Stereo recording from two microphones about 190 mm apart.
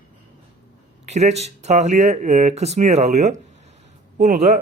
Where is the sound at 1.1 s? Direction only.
35° right (ahead or behind).